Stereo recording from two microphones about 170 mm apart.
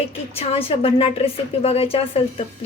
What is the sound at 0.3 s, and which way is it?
A woman's voice, 35° left (ahead or behind).